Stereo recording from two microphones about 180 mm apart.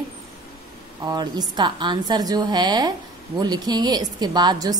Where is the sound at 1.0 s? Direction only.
20° right (ahead or behind).